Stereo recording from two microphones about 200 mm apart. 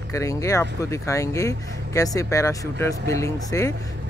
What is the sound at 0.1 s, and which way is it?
Speech, 15° left (ahead or behind).